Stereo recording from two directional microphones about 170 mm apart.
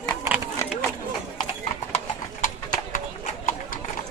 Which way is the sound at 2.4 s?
50° left (ahead or behind).